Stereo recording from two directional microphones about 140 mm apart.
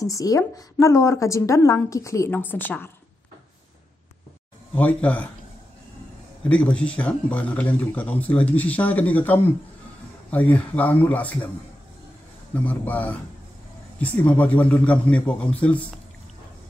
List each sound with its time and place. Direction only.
0.0 s a woman's voice: 25° left (ahead or behind)
4.7 s speech: 10° left (ahead or behind)
6.5 s speech: 10° left (ahead or behind)
12.5 s speech: 10° left (ahead or behind)